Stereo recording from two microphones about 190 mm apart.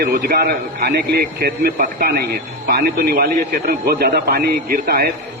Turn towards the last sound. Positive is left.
turn(degrees=-55)  # may be behind; listen again after turning